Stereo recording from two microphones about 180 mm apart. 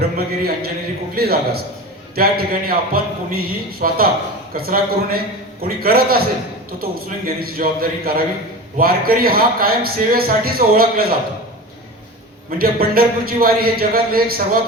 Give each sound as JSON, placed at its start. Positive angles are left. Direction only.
{"t": 0.0, "sound": "a man's voice", "side_deg": -60}
{"t": 12.5, "sound": "a man's voice", "side_deg": -55}